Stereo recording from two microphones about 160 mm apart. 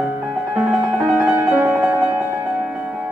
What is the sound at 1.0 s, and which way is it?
Music, 10° right (ahead or behind).